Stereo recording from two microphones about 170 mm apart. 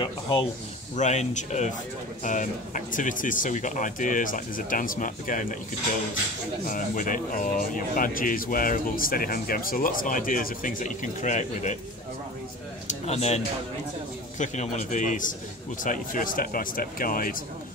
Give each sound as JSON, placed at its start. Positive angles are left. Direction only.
{"t": 0.0, "sound": "speech", "side_deg": 30}
{"t": 0.9, "sound": "speech", "side_deg": 45}
{"t": 6.6, "sound": "speech", "side_deg": 50}
{"t": 13.0, "sound": "speech", "side_deg": 40}
{"t": 14.4, "sound": "speech", "side_deg": 45}